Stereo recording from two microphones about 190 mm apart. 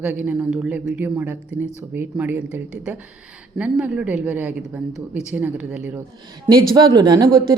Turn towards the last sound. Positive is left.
turn(degrees=-20)  # may be behind; listen again after turning